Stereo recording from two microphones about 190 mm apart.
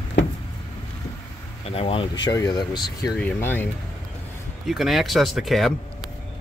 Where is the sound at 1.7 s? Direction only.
30° left (ahead or behind).